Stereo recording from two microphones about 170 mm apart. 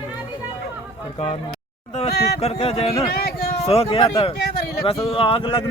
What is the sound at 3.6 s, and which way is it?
Speech, 35° left (ahead or behind).